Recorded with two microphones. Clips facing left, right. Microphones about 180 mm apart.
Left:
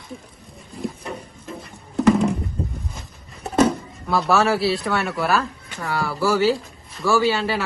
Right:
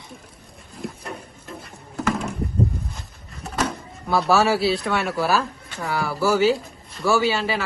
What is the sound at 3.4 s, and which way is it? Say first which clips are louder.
A man's voice: left 8 dB; centre (ahead or behind).